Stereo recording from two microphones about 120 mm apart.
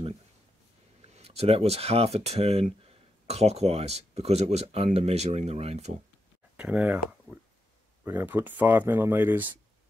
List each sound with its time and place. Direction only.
1.0 s speech: 60° right (ahead or behind)
6.5 s speech: 10° right (ahead or behind)
8.0 s speech: 15° right (ahead or behind)